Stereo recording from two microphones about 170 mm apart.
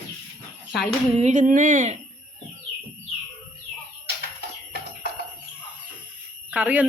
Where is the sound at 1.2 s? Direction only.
50° right (ahead or behind).